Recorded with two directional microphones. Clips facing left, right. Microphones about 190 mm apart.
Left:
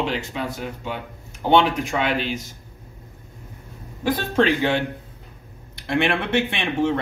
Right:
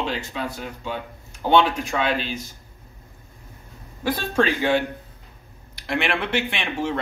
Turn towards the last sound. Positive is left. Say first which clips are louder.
# left 4 dB
turn(degrees=20)  # may be behind; listen again after turning